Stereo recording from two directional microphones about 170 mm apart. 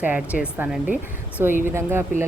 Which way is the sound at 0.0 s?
10° right (ahead or behind).